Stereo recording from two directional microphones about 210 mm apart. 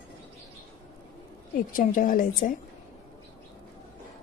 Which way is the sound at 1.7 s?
40° left (ahead or behind).